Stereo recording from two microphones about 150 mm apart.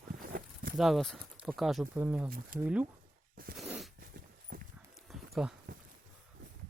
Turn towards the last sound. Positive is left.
turn(degrees=0)  # may be behind; listen again after turning